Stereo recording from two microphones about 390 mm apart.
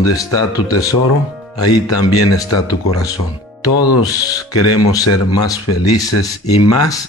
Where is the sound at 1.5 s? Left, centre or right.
Left.